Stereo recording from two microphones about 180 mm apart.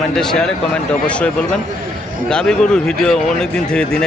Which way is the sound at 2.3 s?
5° left (ahead or behind).